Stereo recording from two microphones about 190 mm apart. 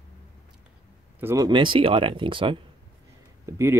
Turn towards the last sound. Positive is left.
turn(degrees=-15)  # may be behind; listen again after turning